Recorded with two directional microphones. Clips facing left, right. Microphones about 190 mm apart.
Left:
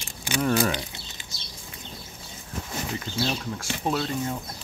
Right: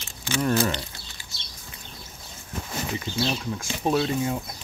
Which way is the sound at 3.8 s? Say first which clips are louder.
Right 4 dB; 15° right (ahead or behind).